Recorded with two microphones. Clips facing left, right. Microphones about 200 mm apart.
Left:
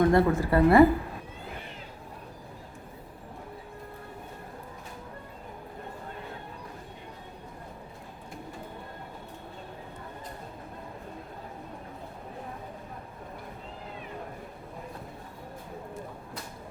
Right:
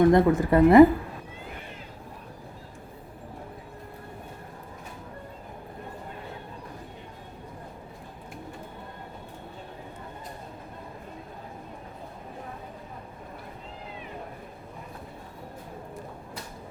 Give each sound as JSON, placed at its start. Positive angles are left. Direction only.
{"t": 0.1, "sound": "a woman's voice", "side_deg": -20}